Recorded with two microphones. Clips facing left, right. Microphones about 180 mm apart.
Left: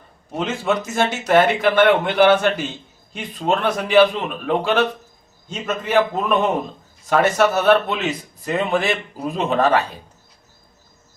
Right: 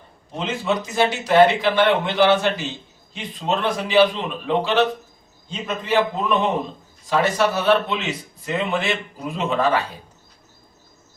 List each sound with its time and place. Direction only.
0.3 s speech: 55° left (ahead or behind)